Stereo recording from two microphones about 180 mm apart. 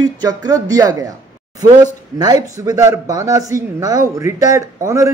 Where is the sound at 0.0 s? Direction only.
20° right (ahead or behind).